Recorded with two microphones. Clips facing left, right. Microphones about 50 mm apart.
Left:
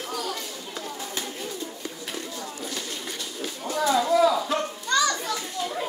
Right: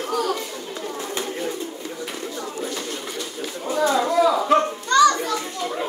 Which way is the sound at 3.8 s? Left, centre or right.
Right.